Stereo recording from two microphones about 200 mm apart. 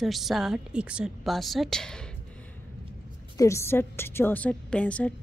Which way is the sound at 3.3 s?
15° left (ahead or behind).